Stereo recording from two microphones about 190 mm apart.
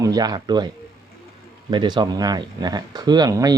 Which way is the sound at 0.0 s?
20° right (ahead or behind).